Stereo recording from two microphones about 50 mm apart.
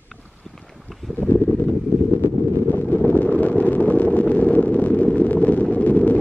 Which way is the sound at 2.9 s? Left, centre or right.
Left.